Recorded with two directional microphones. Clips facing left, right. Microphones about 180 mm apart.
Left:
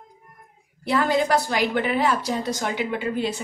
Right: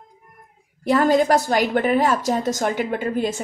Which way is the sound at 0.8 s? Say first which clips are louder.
Right 5 dB; 45° right (ahead or behind).